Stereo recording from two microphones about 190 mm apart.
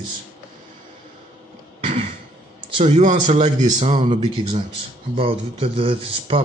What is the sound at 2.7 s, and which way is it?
A man's voice, 35° right (ahead or behind).